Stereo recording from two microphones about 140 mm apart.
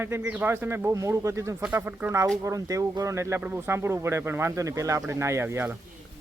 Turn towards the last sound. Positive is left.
turn(degrees=-15)  # may be behind; listen again after turning